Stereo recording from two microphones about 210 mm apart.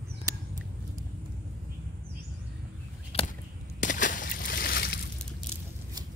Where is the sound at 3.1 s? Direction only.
30° left (ahead or behind); by 5.0 s 45° left (ahead or behind).